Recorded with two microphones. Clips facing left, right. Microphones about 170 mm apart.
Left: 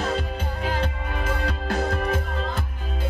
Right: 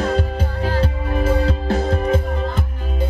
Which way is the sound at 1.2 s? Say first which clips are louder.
Right 9 dB; 30° right (ahead or behind).